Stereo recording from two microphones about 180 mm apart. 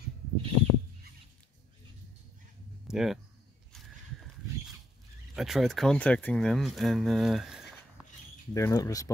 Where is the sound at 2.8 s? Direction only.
5° right (ahead or behind).